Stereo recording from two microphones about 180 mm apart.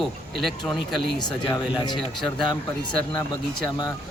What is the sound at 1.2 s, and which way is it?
Speech, 25° left (ahead or behind).